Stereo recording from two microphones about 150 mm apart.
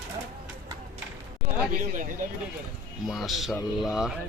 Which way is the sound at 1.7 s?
60° right (ahead or behind).